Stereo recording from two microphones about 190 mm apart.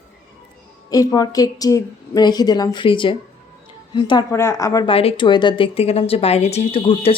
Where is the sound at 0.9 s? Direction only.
20° left (ahead or behind).